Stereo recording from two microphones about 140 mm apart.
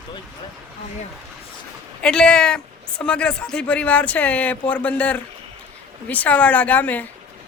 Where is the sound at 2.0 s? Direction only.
5° left (ahead or behind).